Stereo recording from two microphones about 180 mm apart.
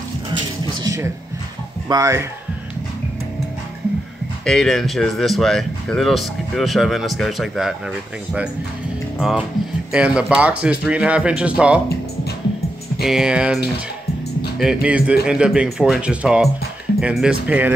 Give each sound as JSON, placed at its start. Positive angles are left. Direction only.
{"t": 0.3, "sound": "a sound", "side_deg": -25}
{"t": 1.9, "sound": "speech", "side_deg": -20}
{"t": 4.5, "sound": "speech", "side_deg": 0}
{"t": 9.9, "sound": "speech", "side_deg": -5}
{"t": 13.0, "sound": "speech", "side_deg": -5}
{"t": 14.6, "sound": "speech", "side_deg": -5}